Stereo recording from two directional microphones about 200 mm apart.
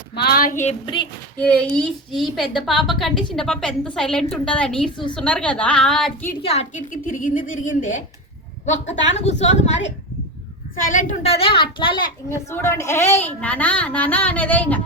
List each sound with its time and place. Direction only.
0.1 s a sound: 50° left (ahead or behind); by 0.8 s 35° left (ahead or behind)
1.4 s a woman's voice: 5° left (ahead or behind)
4.9 s a woman's voice: 25° left (ahead or behind)
5.1 s a woman's voice: 5° left (ahead or behind)
6.4 s a woman's voice: 30° left (ahead or behind); by 14.8 s 10° left (ahead or behind)